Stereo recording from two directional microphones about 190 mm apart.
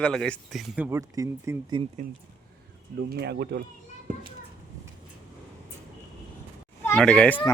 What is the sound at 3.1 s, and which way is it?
Speech, 60° right (ahead or behind).